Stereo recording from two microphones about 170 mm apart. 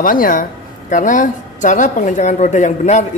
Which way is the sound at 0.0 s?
55° left (ahead or behind).